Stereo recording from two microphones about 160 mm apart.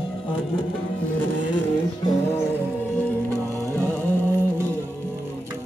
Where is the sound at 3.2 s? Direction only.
15° right (ahead or behind).